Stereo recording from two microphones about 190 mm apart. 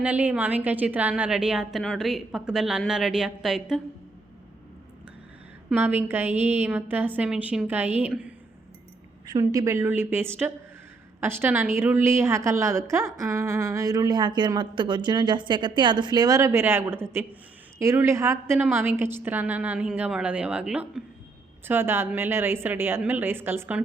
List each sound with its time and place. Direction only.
0.0 s a woman's voice: 10° right (ahead or behind)
5.6 s a woman's voice: 10° right (ahead or behind)
9.2 s a woman's voice: 20° right (ahead or behind)